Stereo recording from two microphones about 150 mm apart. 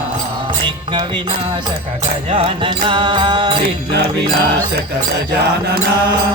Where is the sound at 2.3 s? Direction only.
35° right (ahead or behind).